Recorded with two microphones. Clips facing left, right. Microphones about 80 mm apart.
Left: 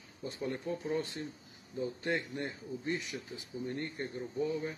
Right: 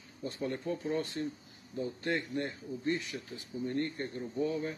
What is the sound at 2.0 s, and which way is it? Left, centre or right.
Speech, centre.